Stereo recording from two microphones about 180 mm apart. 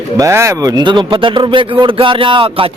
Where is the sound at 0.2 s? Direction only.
15° right (ahead or behind).